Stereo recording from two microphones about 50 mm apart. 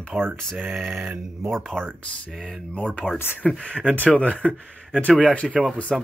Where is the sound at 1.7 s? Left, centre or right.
Left.